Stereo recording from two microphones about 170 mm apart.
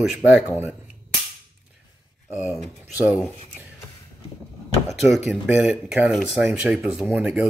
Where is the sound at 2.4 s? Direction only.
Centre (ahead or behind).